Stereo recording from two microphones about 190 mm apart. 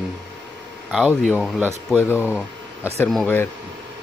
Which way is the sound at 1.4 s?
Centre (ahead or behind).